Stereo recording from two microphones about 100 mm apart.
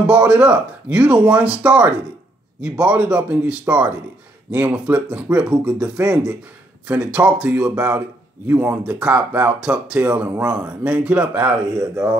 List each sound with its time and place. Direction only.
0.0 s speech: 10° right (ahead or behind)
8.5 s speech: 20° right (ahead or behind)